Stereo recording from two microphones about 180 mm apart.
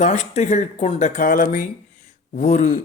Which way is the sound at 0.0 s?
40° left (ahead or behind).